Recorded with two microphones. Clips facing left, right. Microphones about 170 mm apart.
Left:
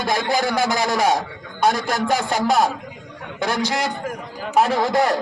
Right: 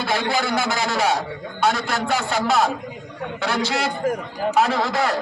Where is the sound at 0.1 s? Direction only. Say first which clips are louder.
Left 2 dB; 40° left (ahead or behind).